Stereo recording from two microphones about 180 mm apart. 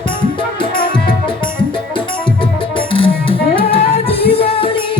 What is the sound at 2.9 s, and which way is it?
Music, 30° left (ahead or behind).